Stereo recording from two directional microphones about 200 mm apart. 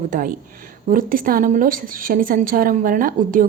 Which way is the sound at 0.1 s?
45° right (ahead or behind).